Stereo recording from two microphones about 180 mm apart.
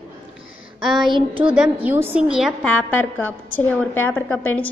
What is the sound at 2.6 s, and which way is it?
A woman's voice, 10° left (ahead or behind).